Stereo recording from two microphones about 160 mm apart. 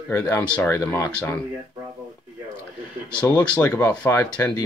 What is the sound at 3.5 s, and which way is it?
Speech, 10° left (ahead or behind).